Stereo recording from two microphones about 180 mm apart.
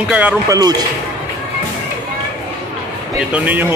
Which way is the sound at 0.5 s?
20° right (ahead or behind).